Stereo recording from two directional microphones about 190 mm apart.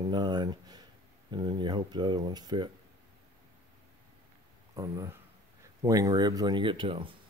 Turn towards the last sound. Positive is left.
turn(degrees=-25)  # may be behind; listen again after turning